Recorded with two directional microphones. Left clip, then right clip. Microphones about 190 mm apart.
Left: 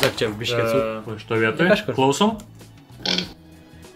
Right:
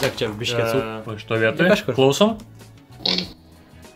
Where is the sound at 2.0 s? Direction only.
35° right (ahead or behind).